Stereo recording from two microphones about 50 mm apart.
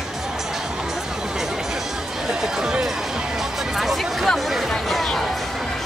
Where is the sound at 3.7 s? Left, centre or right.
Centre.